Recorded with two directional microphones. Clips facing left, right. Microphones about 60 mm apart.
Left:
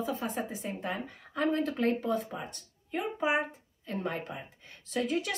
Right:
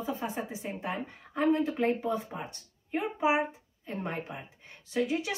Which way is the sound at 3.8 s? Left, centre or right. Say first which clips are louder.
Left 1 dB; right.